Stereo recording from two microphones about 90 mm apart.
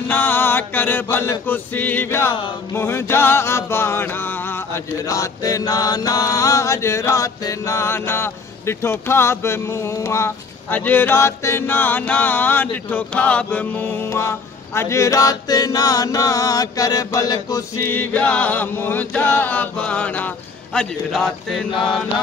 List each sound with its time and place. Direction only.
0.1 s mantra: 20° left (ahead or behind)
5.0 s mantra: 40° left (ahead or behind)
10.7 s mantra: 20° left (ahead or behind)
12.9 s chant: 15° left (ahead or behind)
14.1 s mantra: 30° left (ahead or behind)
17.8 s chant: 20° left (ahead or behind)
20.7 s speech: centre (ahead or behind)